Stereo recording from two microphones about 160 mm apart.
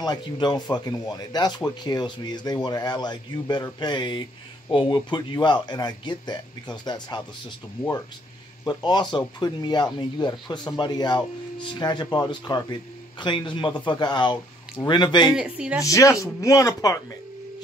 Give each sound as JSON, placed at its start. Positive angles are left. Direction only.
{"t": 0.0, "sound": "speech", "side_deg": 25}
{"t": 8.6, "sound": "speech", "side_deg": 25}
{"t": 15.3, "sound": "a woman's voice", "side_deg": -5}
{"t": 15.8, "sound": "speech", "side_deg": 20}